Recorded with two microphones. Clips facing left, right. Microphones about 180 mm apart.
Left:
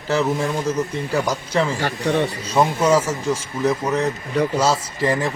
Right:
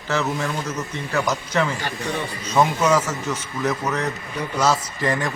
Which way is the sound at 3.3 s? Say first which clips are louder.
Left 5 dB; 30° left (ahead or behind).